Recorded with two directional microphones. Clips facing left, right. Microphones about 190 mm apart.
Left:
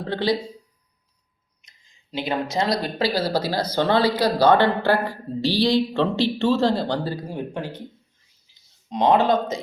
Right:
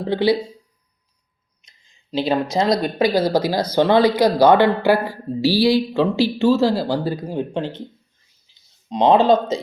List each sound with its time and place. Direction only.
0.0 s speech: 15° right (ahead or behind)
1.6 s speech: 25° right (ahead or behind)
8.9 s speech: 20° right (ahead or behind)